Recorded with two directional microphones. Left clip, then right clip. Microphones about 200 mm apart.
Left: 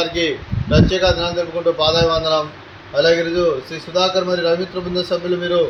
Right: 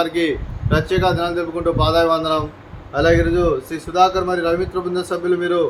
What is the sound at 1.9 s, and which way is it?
Speech, 20° right (ahead or behind).